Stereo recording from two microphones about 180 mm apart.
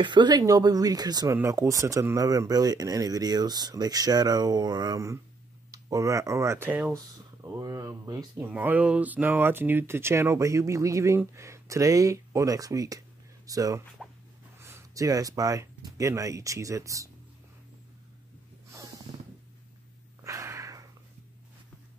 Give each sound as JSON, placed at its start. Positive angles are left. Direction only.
{"t": 0.0, "sound": "speech", "side_deg": -25}
{"t": 8.5, "sound": "speech", "side_deg": -10}
{"t": 18.7, "sound": "snort", "side_deg": -20}
{"t": 20.2, "sound": "a sound", "side_deg": -15}